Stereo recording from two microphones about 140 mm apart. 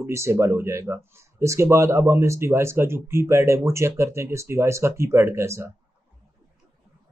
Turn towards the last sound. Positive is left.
turn(degrees=-20)  # may be behind; listen again after turning